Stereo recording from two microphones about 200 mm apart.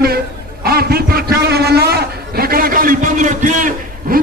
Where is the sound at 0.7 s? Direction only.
50° right (ahead or behind).